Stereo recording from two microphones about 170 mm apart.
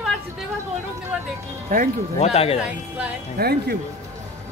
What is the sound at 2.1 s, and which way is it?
Speech, 35° left (ahead or behind).